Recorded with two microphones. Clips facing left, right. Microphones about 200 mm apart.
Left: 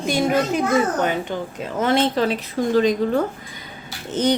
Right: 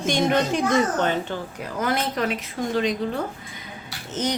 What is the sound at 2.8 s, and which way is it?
Speech, 40° left (ahead or behind).